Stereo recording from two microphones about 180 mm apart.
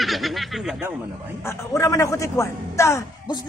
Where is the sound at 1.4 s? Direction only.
15° left (ahead or behind).